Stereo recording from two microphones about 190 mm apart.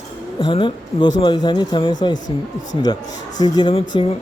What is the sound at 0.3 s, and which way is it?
Speech, 25° left (ahead or behind).